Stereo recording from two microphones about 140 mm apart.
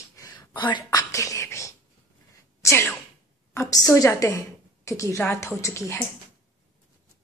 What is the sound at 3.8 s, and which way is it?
Speech, 25° left (ahead or behind).